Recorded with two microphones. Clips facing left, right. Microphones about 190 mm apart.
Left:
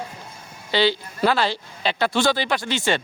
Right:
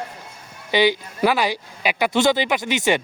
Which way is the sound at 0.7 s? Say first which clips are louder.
Right 2 dB; 15° right (ahead or behind).